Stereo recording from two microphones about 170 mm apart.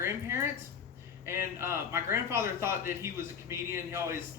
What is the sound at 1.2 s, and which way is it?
A man's voice, 15° right (ahead or behind).